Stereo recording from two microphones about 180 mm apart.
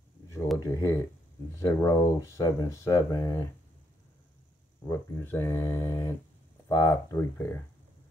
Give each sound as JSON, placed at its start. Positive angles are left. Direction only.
{"t": 0.6, "sound": "speech", "side_deg": 15}
{"t": 4.8, "sound": "speech", "side_deg": 15}